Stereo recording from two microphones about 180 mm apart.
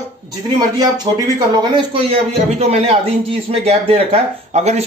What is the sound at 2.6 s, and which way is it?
Speech, 35° right (ahead or behind).